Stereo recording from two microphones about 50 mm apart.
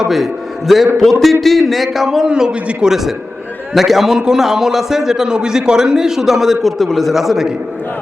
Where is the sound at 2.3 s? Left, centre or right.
Centre.